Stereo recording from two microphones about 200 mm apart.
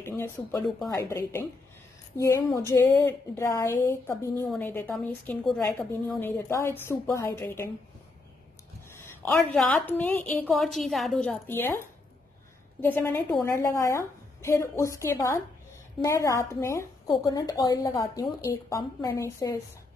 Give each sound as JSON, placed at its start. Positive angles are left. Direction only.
{"t": 0.0, "sound": "a woman's voice", "side_deg": 15}
{"t": 8.9, "sound": "a woman's voice", "side_deg": 10}
{"t": 12.8, "sound": "a woman's voice", "side_deg": 10}